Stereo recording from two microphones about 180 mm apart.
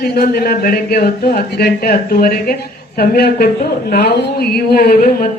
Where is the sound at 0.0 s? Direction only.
60° left (ahead or behind).